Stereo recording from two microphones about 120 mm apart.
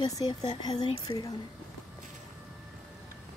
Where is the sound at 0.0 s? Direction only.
35° left (ahead or behind).